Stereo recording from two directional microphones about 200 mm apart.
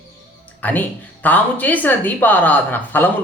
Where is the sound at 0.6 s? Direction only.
10° left (ahead or behind).